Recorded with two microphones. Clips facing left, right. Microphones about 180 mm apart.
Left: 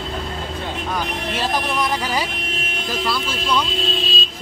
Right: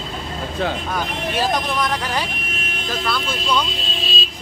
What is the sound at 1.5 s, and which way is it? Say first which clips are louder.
Speech: even; 5° left (ahead or behind).